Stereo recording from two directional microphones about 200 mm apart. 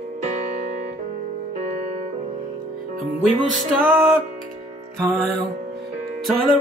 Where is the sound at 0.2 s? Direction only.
40° right (ahead or behind).